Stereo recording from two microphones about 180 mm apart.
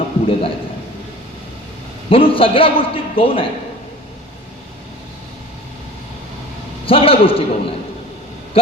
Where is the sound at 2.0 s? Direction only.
30° left (ahead or behind).